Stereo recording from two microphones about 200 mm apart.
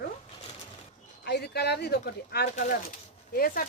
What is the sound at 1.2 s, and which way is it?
Speech, 55° left (ahead or behind).